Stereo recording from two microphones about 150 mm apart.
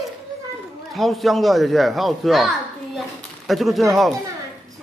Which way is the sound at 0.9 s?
Centre (ahead or behind).